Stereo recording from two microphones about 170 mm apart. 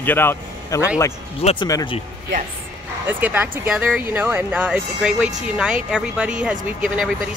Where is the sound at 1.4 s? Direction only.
35° left (ahead or behind).